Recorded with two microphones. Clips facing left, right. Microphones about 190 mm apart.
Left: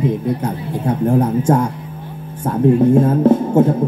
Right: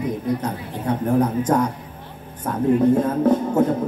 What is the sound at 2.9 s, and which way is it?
Music, 25° left (ahead or behind).